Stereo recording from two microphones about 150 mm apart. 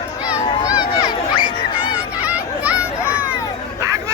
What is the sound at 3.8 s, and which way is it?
Chatter, 20° right (ahead or behind).